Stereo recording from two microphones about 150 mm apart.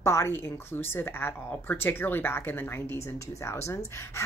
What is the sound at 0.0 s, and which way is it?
A woman's voice, 20° left (ahead or behind).